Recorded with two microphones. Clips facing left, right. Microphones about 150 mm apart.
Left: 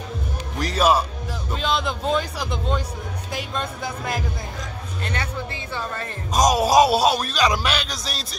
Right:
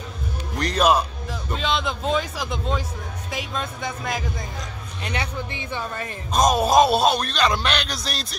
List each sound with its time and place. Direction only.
0.6 s speech: 5° left (ahead or behind)
5.0 s speech: 15° right (ahead or behind)
6.3 s speech: 5° left (ahead or behind)